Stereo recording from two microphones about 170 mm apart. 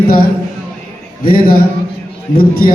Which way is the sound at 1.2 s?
60° left (ahead or behind).